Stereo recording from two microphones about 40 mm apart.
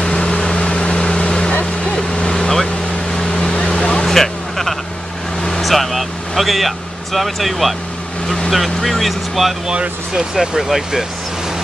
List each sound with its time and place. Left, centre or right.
0.0 s vehicle: left
4.1 s a sound: centre
5.4 s vehicle: centre
8.5 s speech: centre
9.7 s speech: centre